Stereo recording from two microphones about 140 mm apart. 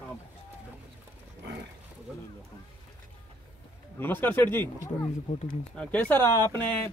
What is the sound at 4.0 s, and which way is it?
Speech, 15° left (ahead or behind).